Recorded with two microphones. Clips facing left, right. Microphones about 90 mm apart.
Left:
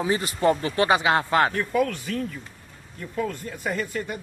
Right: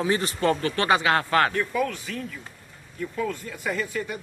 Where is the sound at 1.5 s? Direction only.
45° left (ahead or behind).